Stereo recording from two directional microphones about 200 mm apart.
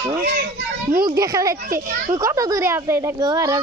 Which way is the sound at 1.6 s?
45° right (ahead or behind).